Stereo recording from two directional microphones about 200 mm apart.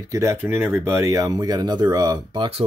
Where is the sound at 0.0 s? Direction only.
15° right (ahead or behind).